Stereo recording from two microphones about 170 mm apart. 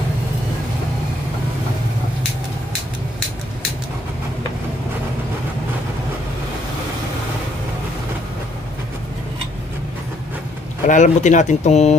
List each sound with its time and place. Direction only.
10.9 s speech: 45° left (ahead or behind)